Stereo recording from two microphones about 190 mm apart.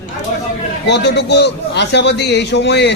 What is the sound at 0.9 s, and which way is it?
A man's voice, 65° left (ahead or behind).